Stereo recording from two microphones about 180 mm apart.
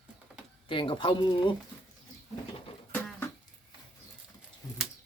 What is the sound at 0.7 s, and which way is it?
Speech, 30° left (ahead or behind).